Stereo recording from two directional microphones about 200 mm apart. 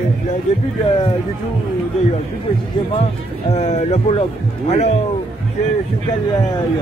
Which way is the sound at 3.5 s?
30° left (ahead or behind).